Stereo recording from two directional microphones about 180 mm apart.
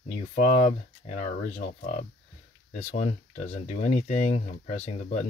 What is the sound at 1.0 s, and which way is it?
Speech, 40° left (ahead or behind).